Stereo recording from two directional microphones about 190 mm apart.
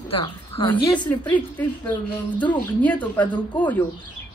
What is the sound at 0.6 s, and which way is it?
Speech, 25° left (ahead or behind).